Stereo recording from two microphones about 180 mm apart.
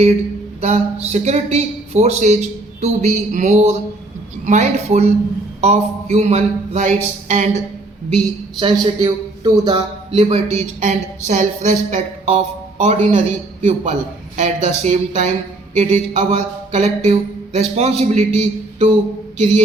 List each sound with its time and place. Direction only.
0.6 s speech: 35° right (ahead or behind)
8.5 s speech: 25° right (ahead or behind); by 18.9 s 40° right (ahead or behind)